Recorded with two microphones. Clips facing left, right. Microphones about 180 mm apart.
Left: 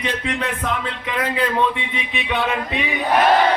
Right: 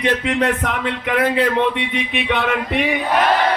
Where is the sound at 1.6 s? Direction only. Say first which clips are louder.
Right 3 dB; 65° right (ahead or behind).